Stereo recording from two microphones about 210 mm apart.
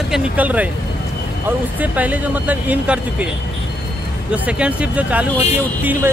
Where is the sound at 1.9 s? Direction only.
5° right (ahead or behind).